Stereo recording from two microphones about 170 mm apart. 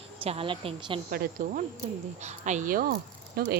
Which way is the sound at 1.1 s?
60° right (ahead or behind).